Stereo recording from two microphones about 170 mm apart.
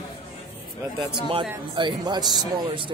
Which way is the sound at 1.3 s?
30° right (ahead or behind).